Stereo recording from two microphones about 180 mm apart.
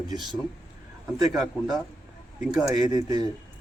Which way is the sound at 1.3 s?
Centre (ahead or behind).